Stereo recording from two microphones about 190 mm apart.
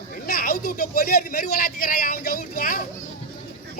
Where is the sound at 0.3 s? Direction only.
50° left (ahead or behind).